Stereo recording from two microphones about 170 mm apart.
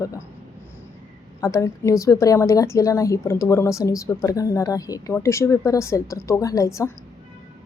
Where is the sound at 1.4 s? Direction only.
20° left (ahead or behind).